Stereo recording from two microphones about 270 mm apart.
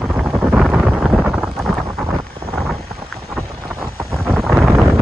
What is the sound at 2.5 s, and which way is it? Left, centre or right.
Vehicle, centre.